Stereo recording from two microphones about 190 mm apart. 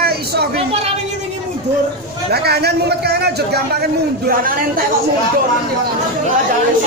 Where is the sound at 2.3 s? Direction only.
55° right (ahead or behind).